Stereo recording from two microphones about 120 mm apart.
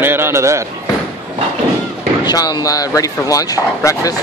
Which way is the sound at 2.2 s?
30° left (ahead or behind).